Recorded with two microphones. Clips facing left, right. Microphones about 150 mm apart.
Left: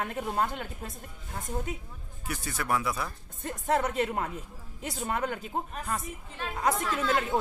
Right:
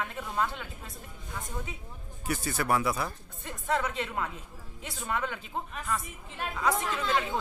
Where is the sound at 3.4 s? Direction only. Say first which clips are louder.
Left 3 dB; 45° left (ahead or behind).